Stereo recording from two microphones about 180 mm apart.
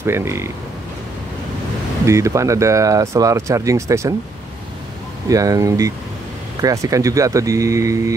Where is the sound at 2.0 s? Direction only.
15° right (ahead or behind).